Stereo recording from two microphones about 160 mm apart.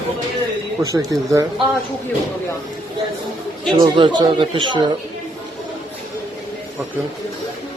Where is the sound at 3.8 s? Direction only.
25° right (ahead or behind).